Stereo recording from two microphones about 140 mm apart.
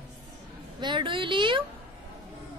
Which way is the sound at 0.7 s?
35° right (ahead or behind).